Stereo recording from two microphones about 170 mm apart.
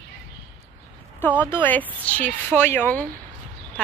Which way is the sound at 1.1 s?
10° left (ahead or behind).